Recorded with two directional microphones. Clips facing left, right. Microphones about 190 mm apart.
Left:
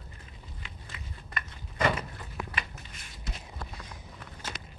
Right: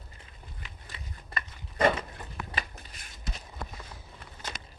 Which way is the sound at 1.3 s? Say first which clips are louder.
Right 1 dB; 30° right (ahead or behind).